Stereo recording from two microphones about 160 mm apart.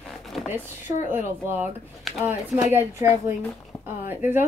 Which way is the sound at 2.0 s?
Centre (ahead or behind).